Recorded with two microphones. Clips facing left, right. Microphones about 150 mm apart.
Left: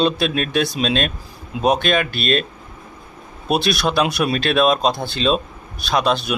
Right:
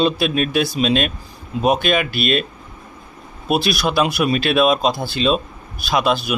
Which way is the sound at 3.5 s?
Centre (ahead or behind).